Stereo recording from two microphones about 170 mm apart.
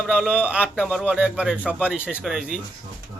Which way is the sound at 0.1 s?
5° right (ahead or behind).